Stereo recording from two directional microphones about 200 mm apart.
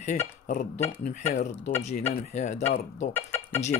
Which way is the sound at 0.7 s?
10° left (ahead or behind).